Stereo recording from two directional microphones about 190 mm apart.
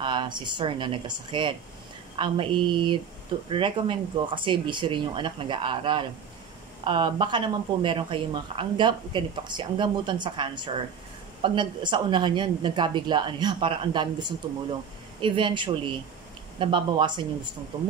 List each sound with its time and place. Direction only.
0.0 s speech: 25° right (ahead or behind)